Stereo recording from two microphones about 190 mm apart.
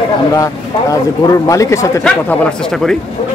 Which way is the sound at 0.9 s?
15° left (ahead or behind).